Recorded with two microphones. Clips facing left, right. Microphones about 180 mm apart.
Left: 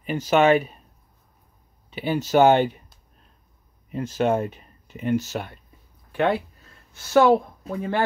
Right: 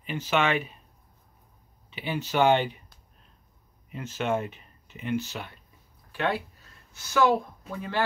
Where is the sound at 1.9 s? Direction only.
40° left (ahead or behind).